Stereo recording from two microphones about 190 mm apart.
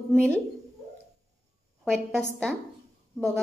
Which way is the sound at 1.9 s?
Centre (ahead or behind).